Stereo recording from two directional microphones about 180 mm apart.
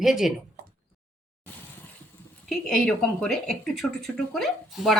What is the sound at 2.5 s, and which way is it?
Speech, 5° left (ahead or behind).